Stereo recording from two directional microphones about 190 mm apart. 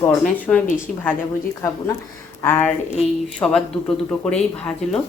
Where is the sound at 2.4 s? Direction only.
10° left (ahead or behind).